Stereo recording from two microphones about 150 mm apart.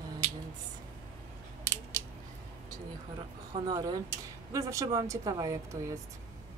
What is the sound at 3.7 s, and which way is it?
Speech, 25° right (ahead or behind).